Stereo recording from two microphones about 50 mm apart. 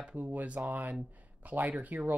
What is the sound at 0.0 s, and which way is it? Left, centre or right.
Speech, right.